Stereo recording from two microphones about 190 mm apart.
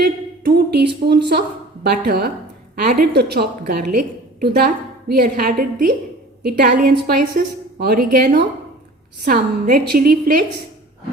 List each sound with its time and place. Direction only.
0.0 s a woman's voice: 55° right (ahead or behind)